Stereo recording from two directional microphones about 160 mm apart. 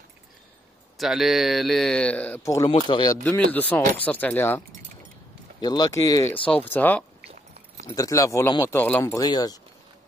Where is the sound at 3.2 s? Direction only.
10° left (ahead or behind).